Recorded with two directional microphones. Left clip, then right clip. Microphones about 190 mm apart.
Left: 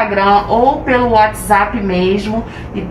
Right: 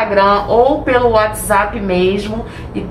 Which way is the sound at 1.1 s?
15° right (ahead or behind).